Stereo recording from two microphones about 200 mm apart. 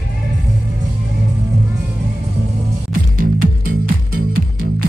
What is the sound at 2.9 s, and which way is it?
Music, 45° right (ahead or behind).